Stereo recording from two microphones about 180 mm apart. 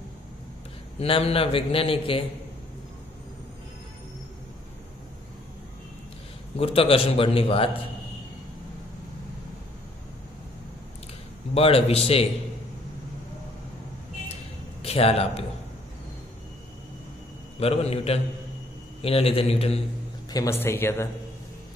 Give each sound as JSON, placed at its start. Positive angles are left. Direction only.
{"t": 0.9, "sound": "a man's voice", "side_deg": 30}
{"t": 6.5, "sound": "a man's voice", "side_deg": 30}
{"t": 11.5, "sound": "a man's voice", "side_deg": 30}
{"t": 14.8, "sound": "a man's voice", "side_deg": 35}
{"t": 17.6, "sound": "a man's voice", "side_deg": 35}
{"t": 20.2, "sound": "speech", "side_deg": 15}